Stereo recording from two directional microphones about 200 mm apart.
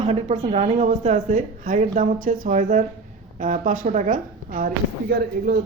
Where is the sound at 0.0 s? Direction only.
30° right (ahead or behind).